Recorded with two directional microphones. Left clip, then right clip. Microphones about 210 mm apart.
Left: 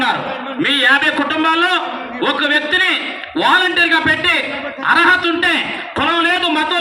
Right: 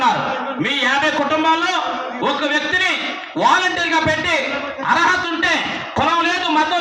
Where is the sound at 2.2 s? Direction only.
45° left (ahead or behind).